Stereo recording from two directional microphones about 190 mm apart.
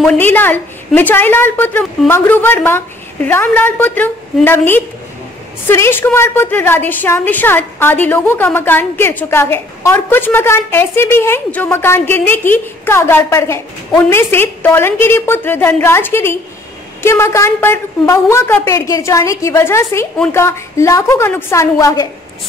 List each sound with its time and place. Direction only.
0.0 s a woman's voice: 10° left (ahead or behind)